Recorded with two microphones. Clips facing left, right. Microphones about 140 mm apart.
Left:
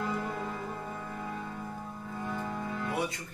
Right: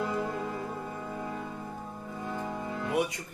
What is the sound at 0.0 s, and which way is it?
Music, 15° right (ahead or behind).